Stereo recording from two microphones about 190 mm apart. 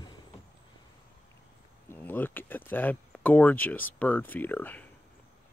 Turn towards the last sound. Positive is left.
turn(degrees=10)  # may be behind; listen again after turning